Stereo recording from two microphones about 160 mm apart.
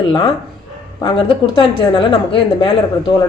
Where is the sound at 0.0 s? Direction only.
30° left (ahead or behind).